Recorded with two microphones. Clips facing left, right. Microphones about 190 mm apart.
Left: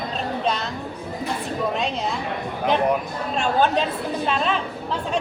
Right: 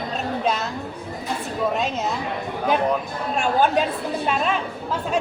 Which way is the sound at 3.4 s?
10° right (ahead or behind).